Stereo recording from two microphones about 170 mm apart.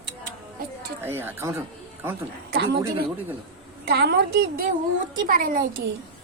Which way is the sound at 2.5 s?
75° right (ahead or behind).